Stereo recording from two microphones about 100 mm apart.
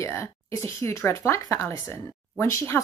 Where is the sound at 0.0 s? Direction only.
30° left (ahead or behind).